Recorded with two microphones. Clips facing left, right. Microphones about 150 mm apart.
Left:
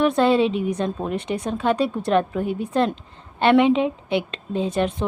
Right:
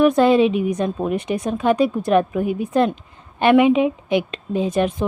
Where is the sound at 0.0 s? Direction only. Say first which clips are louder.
Right 4 dB; 10° right (ahead or behind).